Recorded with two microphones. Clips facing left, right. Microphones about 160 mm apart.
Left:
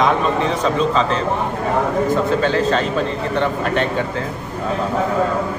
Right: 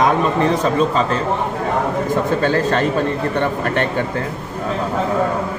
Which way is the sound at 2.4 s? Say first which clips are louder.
Even; 50° right (ahead or behind).